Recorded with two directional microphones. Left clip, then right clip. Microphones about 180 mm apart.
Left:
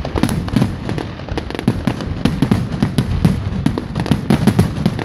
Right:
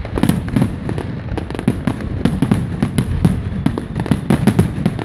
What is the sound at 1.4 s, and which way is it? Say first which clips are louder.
Fireworks: even; centre (ahead or behind).